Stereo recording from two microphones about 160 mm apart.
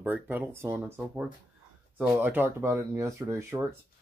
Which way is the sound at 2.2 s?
10° right (ahead or behind).